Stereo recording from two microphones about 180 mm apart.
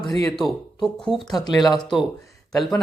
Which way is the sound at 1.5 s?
25° left (ahead or behind).